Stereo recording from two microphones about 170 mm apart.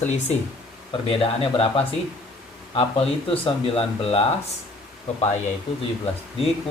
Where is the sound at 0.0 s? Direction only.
40° left (ahead or behind).